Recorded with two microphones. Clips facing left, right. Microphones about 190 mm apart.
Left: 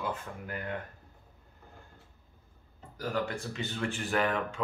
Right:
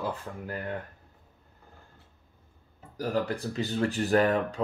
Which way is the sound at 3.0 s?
35° right (ahead or behind).